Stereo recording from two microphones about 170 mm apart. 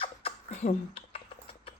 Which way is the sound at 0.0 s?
35° left (ahead or behind).